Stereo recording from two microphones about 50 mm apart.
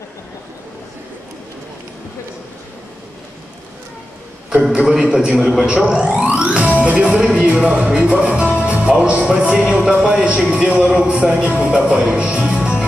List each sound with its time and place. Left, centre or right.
4.7 s a man's voice: centre
6.2 s music: right
6.8 s a man's voice: centre
7.9 s music: right
9.4 s a man's voice: right
12.5 s music: centre